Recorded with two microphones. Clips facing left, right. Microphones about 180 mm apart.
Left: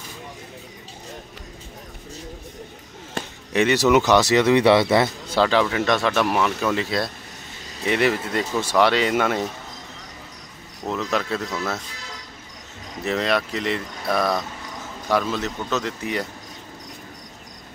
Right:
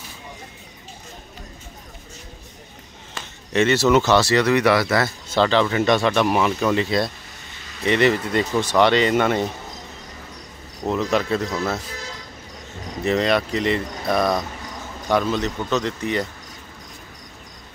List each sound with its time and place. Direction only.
3.2 s basketball bounce: 55° left (ahead or behind)
3.5 s speech: 15° left (ahead or behind)
5.3 s speech: 5° left (ahead or behind)
10.9 s speech: centre (ahead or behind)
13.0 s speech: centre (ahead or behind)